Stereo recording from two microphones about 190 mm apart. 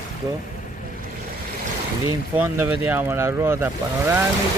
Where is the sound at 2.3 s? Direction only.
10° right (ahead or behind).